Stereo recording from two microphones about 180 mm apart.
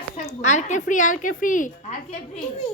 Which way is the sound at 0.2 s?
40° left (ahead or behind).